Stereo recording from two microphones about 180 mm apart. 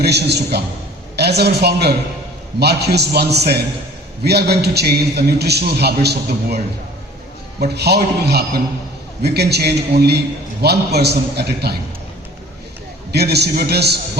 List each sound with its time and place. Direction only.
0.0 s a man's voice: 65° right (ahead or behind)
7.6 s a man's voice: 65° right (ahead or behind)
13.1 s a man's voice: 65° right (ahead or behind)